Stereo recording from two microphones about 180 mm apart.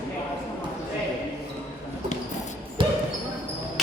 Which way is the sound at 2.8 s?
30° right (ahead or behind).